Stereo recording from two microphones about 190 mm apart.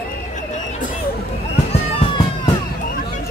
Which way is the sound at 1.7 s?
30° left (ahead or behind).